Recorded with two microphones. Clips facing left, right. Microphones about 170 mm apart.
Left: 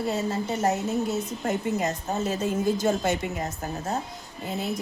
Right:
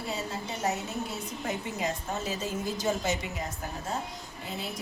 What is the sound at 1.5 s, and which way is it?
A woman's voice, 50° left (ahead or behind).